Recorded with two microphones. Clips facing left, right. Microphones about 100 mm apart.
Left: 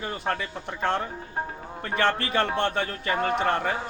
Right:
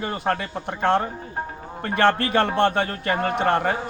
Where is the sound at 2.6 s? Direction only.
90° right.